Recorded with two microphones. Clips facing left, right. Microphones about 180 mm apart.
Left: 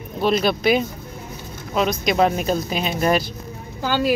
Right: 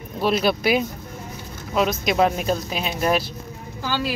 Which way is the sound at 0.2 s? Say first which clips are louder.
Left 1 dB; 5° right (ahead or behind).